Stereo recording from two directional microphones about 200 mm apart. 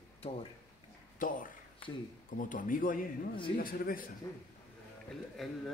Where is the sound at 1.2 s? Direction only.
45° left (ahead or behind).